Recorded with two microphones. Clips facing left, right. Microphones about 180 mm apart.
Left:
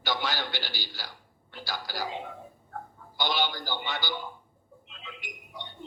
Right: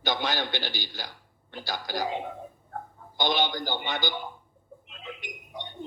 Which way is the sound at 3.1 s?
20° right (ahead or behind).